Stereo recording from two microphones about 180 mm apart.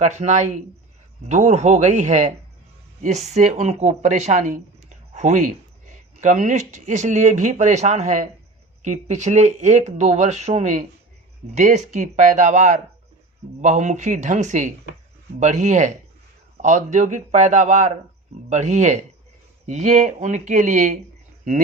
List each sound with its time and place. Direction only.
0.0 s speech: 40° right (ahead or behind)